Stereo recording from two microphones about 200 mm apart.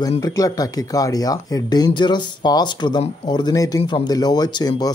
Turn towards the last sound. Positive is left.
turn(degrees=20)  # may be behind; listen again after turning